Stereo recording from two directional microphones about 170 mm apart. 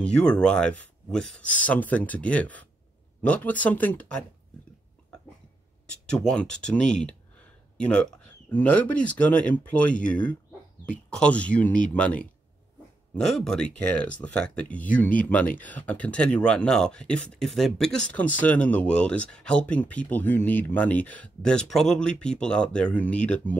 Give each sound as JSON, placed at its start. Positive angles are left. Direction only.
{"t": 0.0, "sound": "speech", "side_deg": 5}
{"t": 6.0, "sound": "speech", "side_deg": 5}